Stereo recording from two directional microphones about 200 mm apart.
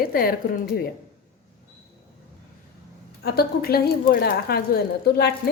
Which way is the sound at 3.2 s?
50° left (ahead or behind).